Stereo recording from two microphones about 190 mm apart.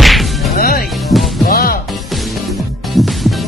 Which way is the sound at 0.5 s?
50° left (ahead or behind).